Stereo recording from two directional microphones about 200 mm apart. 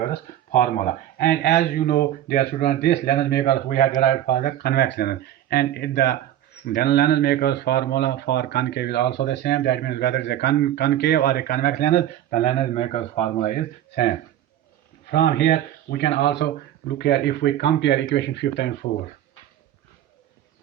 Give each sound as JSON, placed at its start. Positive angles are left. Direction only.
{"t": 0.0, "sound": "speech", "side_deg": 45}
{"t": 11.9, "sound": "speech", "side_deg": 35}
{"t": 13.5, "sound": "speech", "side_deg": 55}
{"t": 15.1, "sound": "speech", "side_deg": 55}